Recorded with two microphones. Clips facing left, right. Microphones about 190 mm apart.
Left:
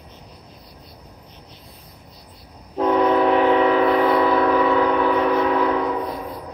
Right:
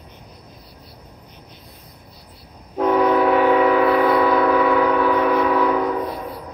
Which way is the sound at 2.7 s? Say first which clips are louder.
Right 1 dB; 5° right (ahead or behind).